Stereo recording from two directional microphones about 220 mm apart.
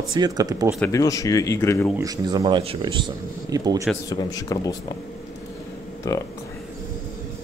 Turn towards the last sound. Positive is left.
turn(degrees=15)  # may be behind; listen again after turning